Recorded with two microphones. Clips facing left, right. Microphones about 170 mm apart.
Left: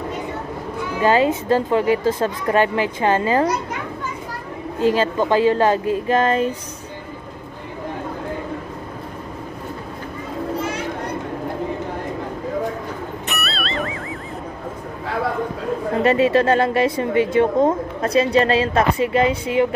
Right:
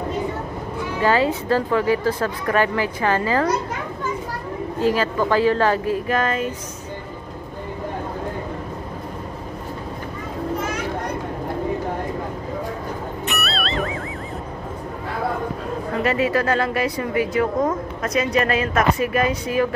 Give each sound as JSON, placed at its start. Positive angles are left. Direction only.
{"t": 1.0, "sound": "speech", "side_deg": 20}
{"t": 4.7, "sound": "speech", "side_deg": 20}
{"t": 13.3, "sound": "music", "side_deg": 0}
{"t": 16.0, "sound": "speech", "side_deg": 25}